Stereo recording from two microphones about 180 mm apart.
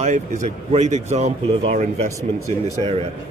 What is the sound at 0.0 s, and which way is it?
A man's voice, 40° right (ahead or behind).